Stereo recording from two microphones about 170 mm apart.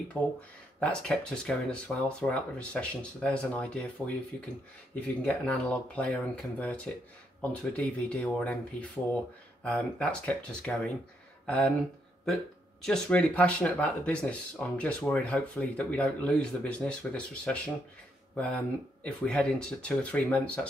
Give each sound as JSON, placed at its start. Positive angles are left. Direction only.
{"t": 0.2, "sound": "speech", "side_deg": 10}
{"t": 9.6, "sound": "speech", "side_deg": 5}
{"t": 12.8, "sound": "speech", "side_deg": 5}